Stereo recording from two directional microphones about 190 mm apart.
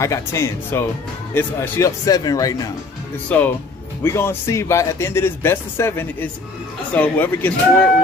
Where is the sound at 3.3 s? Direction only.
5° left (ahead or behind).